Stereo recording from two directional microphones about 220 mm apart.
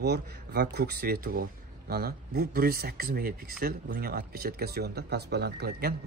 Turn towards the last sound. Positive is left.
turn(degrees=-45)  # may be behind; listen again after turning